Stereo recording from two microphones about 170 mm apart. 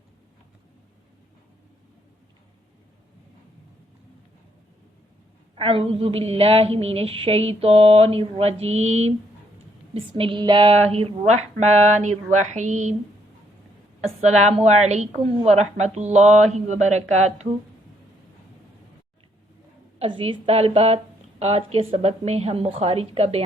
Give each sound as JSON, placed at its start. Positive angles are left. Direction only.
{"t": 5.5, "sound": "a woman's voice", "side_deg": -30}
{"t": 14.2, "sound": "a woman's voice", "side_deg": -40}
{"t": 20.0, "sound": "a woman's voice", "side_deg": -35}